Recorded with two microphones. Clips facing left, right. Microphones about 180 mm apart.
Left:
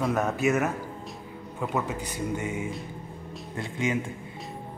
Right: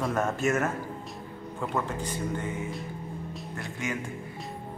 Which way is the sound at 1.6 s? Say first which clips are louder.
Left 1 dB; 5° left (ahead or behind).